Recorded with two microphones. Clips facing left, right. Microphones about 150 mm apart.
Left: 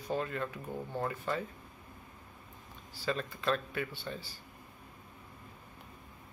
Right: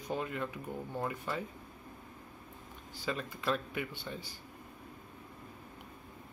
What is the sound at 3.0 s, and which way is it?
Speech, 10° right (ahead or behind).